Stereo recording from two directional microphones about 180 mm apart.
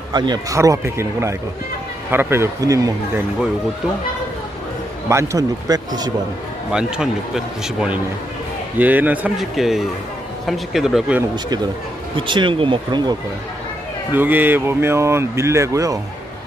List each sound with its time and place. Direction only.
0.1 s speech: 25° right (ahead or behind)
5.1 s speech: 15° right (ahead or behind)
6.7 s a man's voice: 5° right (ahead or behind)
11.3 s speech: 25° right (ahead or behind)
14.1 s speech: 10° right (ahead or behind)